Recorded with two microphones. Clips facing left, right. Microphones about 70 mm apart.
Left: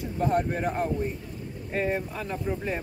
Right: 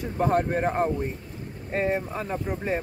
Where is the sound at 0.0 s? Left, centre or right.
Right.